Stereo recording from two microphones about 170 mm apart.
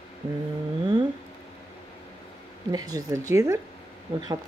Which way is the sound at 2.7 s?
20° right (ahead or behind).